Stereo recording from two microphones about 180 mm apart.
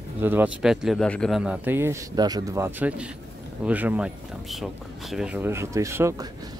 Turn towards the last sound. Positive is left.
turn(degrees=-15)  # may be behind; listen again after turning